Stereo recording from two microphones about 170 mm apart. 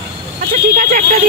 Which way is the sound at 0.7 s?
55° right (ahead or behind).